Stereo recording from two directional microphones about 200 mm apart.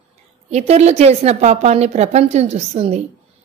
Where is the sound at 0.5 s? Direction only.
35° right (ahead or behind).